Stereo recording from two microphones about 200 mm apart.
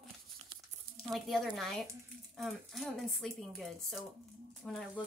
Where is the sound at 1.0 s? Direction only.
Centre (ahead or behind).